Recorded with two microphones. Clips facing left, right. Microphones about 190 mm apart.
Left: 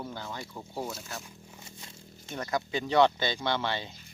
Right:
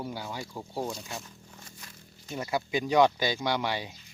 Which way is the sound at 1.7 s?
25° left (ahead or behind).